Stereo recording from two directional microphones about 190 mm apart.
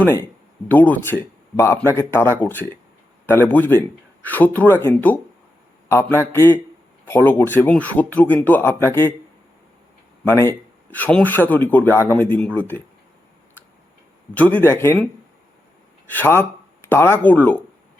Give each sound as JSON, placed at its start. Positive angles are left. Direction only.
{"t": 0.0, "sound": "a man's voice", "side_deg": 10}
{"t": 10.2, "sound": "a man's voice", "side_deg": 15}
{"t": 14.3, "sound": "a man's voice", "side_deg": 10}
{"t": 16.0, "sound": "a man's voice", "side_deg": 10}